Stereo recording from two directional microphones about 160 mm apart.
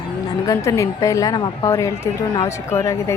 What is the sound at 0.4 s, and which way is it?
A woman's voice, 20° left (ahead or behind).